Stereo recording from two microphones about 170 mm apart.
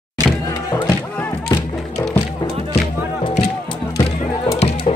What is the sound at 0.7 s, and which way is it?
Music, 20° left (ahead or behind).